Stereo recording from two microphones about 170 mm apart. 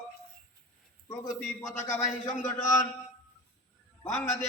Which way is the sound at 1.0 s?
20° left (ahead or behind).